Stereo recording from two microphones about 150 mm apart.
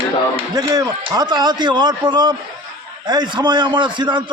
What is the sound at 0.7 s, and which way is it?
A man's voice, 25° right (ahead or behind).